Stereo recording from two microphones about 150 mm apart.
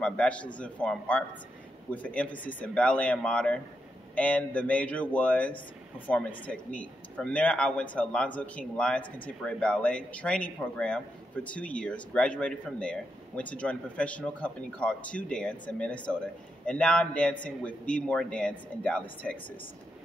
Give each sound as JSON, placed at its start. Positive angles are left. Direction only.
{"t": 0.0, "sound": "speech", "side_deg": 10}